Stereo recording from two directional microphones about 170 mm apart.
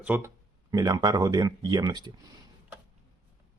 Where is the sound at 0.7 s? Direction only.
20° right (ahead or behind).